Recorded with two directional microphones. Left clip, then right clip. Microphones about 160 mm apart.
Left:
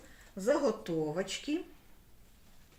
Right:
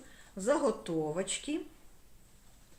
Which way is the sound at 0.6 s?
20° left (ahead or behind).